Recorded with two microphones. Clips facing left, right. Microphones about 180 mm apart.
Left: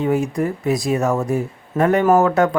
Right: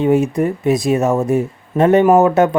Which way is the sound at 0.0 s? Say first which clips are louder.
Right 5 dB; 20° right (ahead or behind).